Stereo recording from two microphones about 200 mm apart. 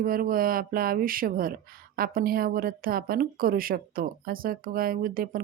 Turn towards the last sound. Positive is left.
turn(degrees=-45)  # may be behind; listen again after turning